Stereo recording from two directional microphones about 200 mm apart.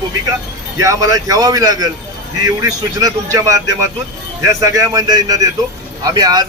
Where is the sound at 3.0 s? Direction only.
15° right (ahead or behind).